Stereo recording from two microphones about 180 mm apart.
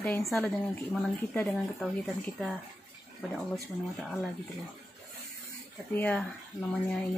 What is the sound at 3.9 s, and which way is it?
Speech, centre (ahead or behind).